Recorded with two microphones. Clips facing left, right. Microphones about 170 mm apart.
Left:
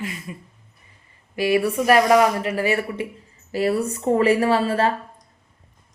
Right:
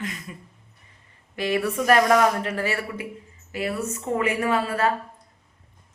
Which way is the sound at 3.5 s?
35° left (ahead or behind).